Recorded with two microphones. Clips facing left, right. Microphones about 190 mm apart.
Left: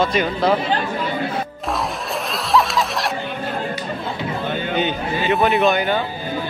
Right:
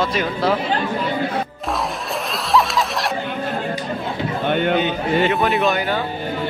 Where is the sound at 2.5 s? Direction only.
Centre (ahead or behind).